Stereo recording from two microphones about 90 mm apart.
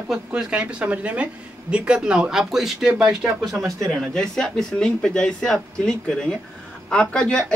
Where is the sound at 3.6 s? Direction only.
35° right (ahead or behind).